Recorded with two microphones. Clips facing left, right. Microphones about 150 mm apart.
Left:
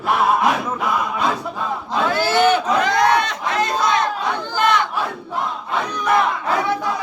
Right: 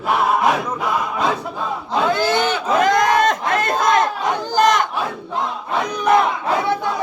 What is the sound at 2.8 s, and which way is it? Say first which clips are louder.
Crowd: right 2 dB; 45° right (ahead or behind).